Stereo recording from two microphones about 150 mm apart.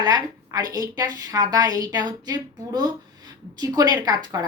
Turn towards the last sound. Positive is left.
turn(degrees=-25)  # may be behind; listen again after turning